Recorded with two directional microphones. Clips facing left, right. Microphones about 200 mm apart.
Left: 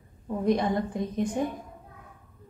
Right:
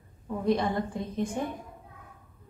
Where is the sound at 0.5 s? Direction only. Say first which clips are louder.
Left 1 dB; 15° left (ahead or behind).